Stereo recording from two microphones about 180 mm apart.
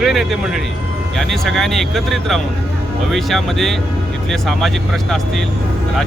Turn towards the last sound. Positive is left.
turn(degrees=0)  # may be behind; listen again after turning